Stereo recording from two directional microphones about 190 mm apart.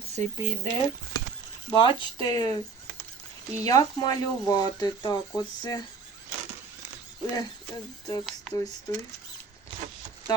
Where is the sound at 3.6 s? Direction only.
20° left (ahead or behind).